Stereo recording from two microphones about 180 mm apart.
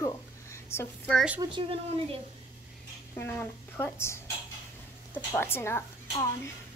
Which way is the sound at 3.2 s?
10° left (ahead or behind).